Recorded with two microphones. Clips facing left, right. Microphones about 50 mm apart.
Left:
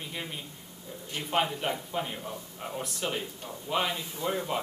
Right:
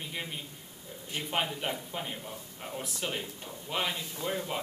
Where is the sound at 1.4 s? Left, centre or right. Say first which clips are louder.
Left 3 dB; centre.